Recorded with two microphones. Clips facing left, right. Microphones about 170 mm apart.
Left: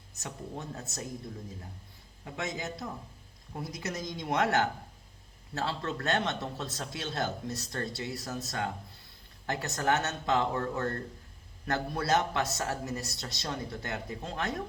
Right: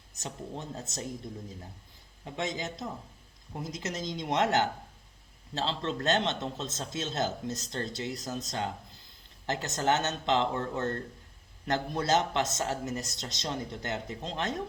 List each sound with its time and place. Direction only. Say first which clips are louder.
0.1 s a sound: right 2 dB; 20° right (ahead or behind)
0.8 s a man's voice: right 2 dB; 20° right (ahead or behind)
2.2 s a man's voice: right 2 dB; 20° right (ahead or behind)